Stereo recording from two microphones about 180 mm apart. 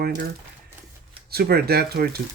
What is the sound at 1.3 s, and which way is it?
Speech, 60° right (ahead or behind).